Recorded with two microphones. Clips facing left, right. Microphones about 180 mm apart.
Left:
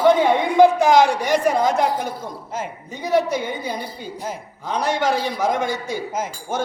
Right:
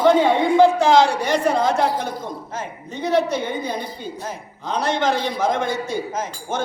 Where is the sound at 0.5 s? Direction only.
15° left (ahead or behind).